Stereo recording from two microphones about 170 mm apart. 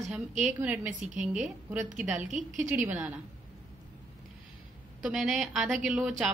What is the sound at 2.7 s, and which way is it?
Speech, 10° right (ahead or behind).